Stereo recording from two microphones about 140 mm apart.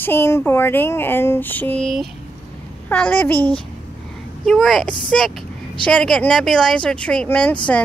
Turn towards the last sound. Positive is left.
turn(degrees=10)  # may be behind; listen again after turning